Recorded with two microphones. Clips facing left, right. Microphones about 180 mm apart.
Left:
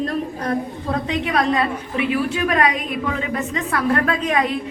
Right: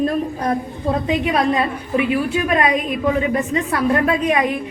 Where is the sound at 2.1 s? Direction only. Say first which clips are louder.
Right 2 dB; 20° right (ahead or behind).